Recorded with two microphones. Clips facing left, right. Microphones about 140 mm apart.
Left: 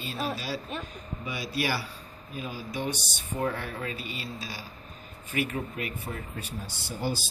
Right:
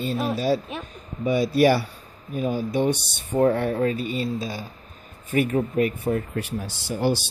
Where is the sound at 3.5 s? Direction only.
50° right (ahead or behind).